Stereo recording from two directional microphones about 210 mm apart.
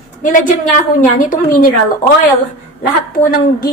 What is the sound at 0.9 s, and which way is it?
Speech, 40° left (ahead or behind).